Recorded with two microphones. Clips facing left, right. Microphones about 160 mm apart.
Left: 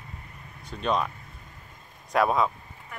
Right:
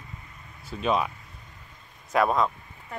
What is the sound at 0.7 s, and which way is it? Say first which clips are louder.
Speech: right 1 dB; 5° right (ahead or behind).